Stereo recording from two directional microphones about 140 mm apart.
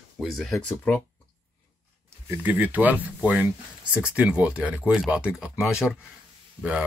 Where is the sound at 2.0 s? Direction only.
20° right (ahead or behind).